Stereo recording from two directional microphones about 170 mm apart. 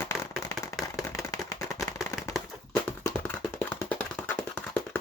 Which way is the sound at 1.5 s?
20° left (ahead or behind).